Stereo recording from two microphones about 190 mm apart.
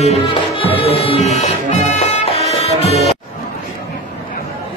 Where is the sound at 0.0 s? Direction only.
30° left (ahead or behind).